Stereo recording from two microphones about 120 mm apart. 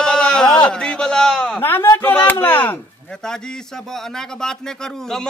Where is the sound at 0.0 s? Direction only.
5° left (ahead or behind).